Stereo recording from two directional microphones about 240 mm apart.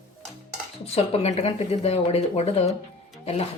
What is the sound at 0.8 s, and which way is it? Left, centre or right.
Speech, left.